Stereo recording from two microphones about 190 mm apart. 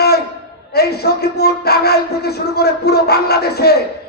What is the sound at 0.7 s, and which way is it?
A woman's voice, 55° left (ahead or behind).